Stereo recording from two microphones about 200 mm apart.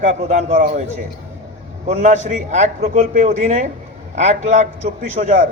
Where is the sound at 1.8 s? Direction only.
40° right (ahead or behind).